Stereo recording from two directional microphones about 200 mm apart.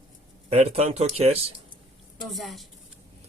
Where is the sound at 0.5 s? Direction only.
30° right (ahead or behind).